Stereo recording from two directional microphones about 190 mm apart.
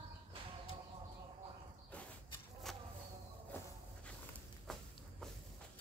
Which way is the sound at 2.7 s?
Centre (ahead or behind).